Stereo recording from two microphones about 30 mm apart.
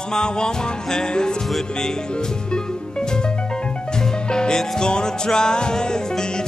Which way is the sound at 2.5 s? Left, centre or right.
Left.